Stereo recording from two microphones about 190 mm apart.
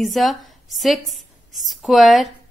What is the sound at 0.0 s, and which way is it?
A woman's voice, centre (ahead or behind).